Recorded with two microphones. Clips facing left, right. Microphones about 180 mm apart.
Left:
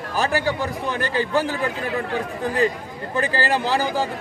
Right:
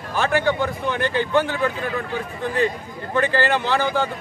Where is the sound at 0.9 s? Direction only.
35° left (ahead or behind).